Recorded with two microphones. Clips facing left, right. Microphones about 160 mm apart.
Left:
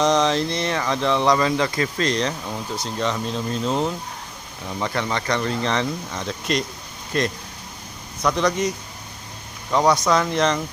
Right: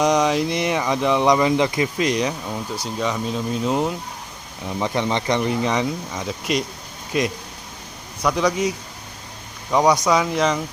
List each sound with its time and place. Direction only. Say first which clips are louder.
0.0 s speech: right 1 dB; 10° right (ahead or behind)
9.7 s speech: right 1 dB; 15° right (ahead or behind)